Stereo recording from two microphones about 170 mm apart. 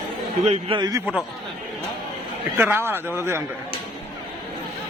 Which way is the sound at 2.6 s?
15° right (ahead or behind).